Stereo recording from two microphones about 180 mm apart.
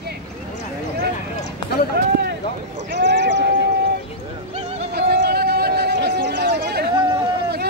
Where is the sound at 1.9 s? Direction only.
60° right (ahead or behind).